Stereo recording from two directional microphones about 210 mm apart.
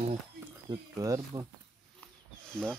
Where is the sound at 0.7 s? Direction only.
15° right (ahead or behind).